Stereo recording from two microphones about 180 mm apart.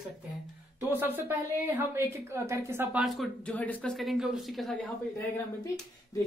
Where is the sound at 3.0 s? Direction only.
Centre (ahead or behind).